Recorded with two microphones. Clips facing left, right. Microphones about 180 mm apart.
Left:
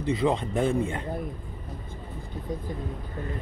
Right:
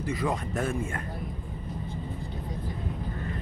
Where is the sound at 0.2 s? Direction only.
20° left (ahead or behind).